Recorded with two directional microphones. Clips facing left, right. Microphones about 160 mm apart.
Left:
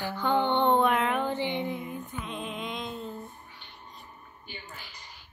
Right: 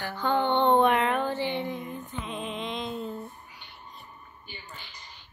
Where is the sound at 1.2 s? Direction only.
15° left (ahead or behind).